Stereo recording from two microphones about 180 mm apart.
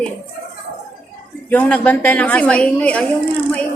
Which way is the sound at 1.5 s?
10° left (ahead or behind).